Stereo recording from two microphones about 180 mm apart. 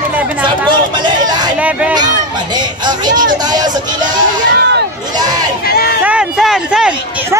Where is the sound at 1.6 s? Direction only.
5° right (ahead or behind).